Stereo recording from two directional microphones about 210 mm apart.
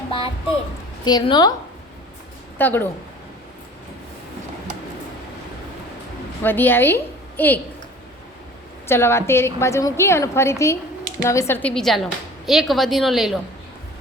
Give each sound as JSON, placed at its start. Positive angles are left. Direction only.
{"t": 1.0, "sound": "a woman's voice", "side_deg": 20}
{"t": 2.6, "sound": "a woman's voice", "side_deg": 10}
{"t": 6.4, "sound": "a woman's voice", "side_deg": 10}
{"t": 8.9, "sound": "a woman's voice", "side_deg": 10}